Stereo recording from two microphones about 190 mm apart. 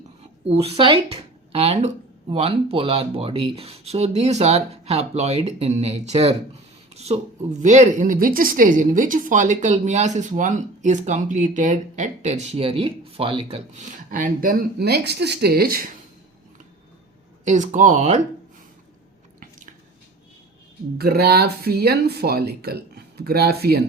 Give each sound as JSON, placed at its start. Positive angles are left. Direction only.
{"t": 0.4, "sound": "speech", "side_deg": -30}
{"t": 13.7, "sound": "speech", "side_deg": -40}
{"t": 17.4, "sound": "speech", "side_deg": -40}
{"t": 21.0, "sound": "speech", "side_deg": -55}